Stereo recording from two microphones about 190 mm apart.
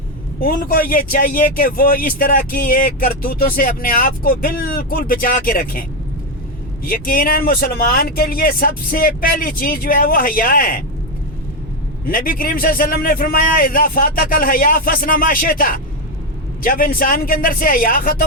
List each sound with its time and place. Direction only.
0.3 s speech: 50° left (ahead or behind)
6.8 s speech: 50° left (ahead or behind)
12.0 s speech: 50° left (ahead or behind)